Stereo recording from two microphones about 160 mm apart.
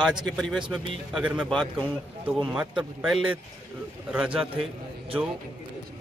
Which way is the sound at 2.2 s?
5° right (ahead or behind).